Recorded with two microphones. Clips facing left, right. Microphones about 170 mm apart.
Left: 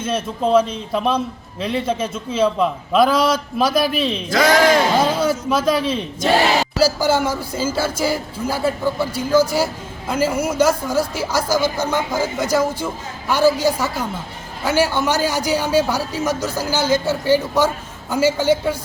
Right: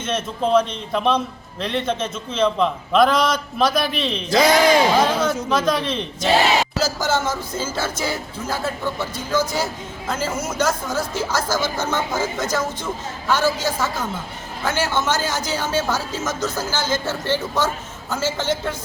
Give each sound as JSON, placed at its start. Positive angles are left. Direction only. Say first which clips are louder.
{"t": 0.0, "sound": "a man's voice", "louder": "left 2 dB", "side_deg": 5}
{"t": 4.3, "sound": "speech", "louder": "right 1 dB", "side_deg": -20}
{"t": 5.2, "sound": "a man's voice", "louder": "left 2 dB", "side_deg": 5}